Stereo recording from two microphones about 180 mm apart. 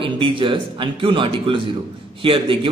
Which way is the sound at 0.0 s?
30° right (ahead or behind).